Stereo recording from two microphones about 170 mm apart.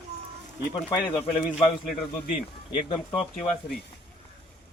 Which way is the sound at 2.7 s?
30° left (ahead or behind).